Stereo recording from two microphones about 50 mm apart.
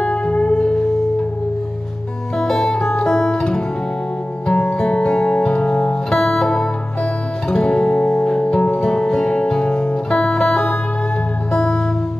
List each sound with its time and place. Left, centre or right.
0.0 s music: centre
2.3 s music: centre
3.0 s guitar: centre
4.5 s music: centre
6.1 s music: centre